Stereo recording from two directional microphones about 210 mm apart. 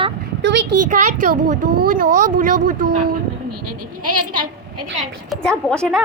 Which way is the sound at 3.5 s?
90° right.